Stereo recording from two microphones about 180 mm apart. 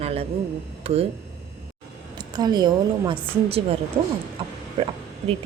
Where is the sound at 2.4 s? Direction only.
25° right (ahead or behind).